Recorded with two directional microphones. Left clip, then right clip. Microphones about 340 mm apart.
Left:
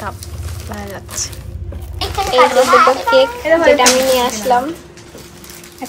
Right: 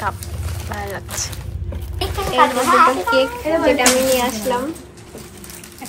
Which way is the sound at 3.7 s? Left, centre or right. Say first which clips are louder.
Left 4 dB; centre.